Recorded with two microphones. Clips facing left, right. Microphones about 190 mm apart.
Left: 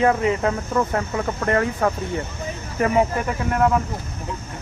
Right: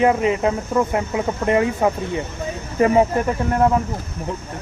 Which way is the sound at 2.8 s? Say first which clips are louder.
Right 4 dB; 30° right (ahead or behind).